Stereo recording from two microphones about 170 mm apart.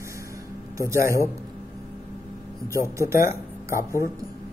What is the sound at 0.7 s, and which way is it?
Speech, 15° right (ahead or behind).